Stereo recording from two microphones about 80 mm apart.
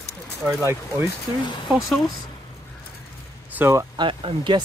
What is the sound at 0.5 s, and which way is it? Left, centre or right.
Speech, right.